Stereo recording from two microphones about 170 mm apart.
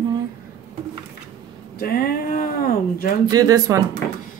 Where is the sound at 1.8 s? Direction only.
60° left (ahead or behind).